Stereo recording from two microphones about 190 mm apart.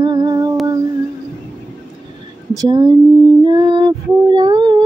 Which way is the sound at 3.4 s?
20° right (ahead or behind).